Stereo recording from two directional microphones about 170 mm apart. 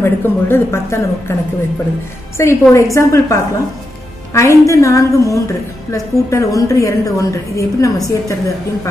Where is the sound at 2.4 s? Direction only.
15° left (ahead or behind).